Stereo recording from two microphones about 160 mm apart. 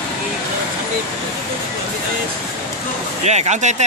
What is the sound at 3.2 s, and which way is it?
Speech, 45° right (ahead or behind).